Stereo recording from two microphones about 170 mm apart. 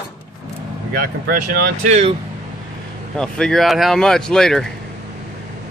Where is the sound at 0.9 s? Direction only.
60° right (ahead or behind).